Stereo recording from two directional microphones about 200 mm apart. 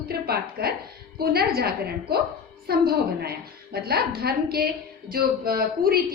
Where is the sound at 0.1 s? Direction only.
50° right (ahead or behind).